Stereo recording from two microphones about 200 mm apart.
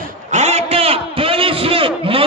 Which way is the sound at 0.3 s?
35° right (ahead or behind).